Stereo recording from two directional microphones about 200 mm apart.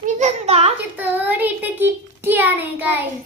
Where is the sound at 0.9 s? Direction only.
10° right (ahead or behind).